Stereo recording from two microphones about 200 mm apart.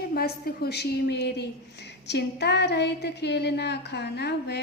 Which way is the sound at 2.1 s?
55° left (ahead or behind).